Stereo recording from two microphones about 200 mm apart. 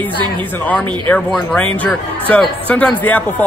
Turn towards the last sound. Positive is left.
turn(degrees=10)  # may be behind; listen again after turning